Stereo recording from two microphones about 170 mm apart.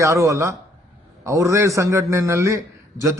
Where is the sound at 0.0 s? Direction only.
20° right (ahead or behind).